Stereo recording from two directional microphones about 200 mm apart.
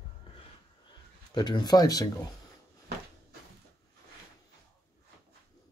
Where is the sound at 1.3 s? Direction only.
20° left (ahead or behind).